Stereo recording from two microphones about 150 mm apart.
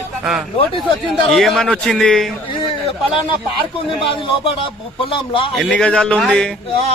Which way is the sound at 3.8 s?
35° left (ahead or behind).